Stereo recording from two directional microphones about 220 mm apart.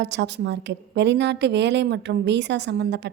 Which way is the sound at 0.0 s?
50° right (ahead or behind).